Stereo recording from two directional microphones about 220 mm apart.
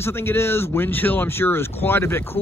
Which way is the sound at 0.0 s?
10° left (ahead or behind).